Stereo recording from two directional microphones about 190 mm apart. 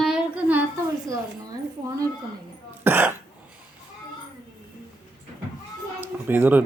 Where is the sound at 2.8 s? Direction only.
10° right (ahead or behind).